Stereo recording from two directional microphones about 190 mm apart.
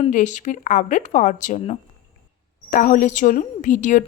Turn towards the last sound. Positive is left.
turn(degrees=40)  # may be behind; listen again after turning